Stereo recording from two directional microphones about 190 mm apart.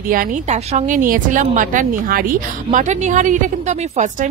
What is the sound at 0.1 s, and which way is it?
Speech, 45° right (ahead or behind).